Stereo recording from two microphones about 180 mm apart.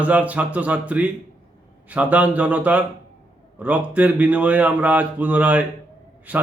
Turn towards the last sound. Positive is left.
turn(degrees=-10)  # may be behind; listen again after turning